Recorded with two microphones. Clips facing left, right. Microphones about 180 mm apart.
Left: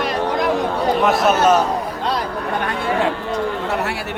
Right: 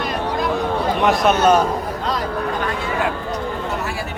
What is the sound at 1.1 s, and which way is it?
Speech, centre (ahead or behind).